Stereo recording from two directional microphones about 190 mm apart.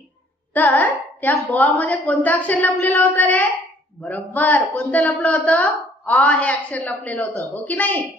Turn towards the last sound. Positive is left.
turn(degrees=10)  # may be behind; listen again after turning